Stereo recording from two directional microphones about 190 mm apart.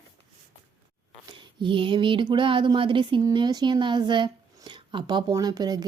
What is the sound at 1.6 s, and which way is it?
Speech, 25° right (ahead or behind).